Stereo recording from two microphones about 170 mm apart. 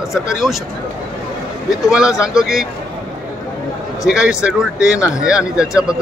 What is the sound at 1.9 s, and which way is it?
Speech, 5° right (ahead or behind).